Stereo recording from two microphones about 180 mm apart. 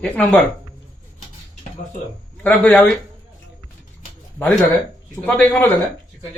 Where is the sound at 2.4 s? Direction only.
5° left (ahead or behind).